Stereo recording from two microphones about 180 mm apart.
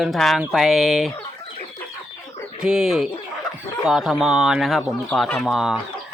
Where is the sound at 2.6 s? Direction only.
5° right (ahead or behind).